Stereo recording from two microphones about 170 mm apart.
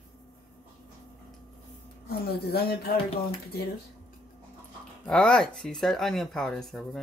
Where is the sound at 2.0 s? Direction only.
65° left (ahead or behind).